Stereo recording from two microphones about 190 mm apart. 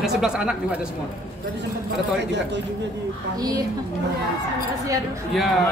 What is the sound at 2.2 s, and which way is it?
Speech, 65° right (ahead or behind).